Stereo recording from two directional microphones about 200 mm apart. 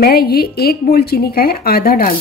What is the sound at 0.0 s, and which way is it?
A woman's voice, 50° left (ahead or behind).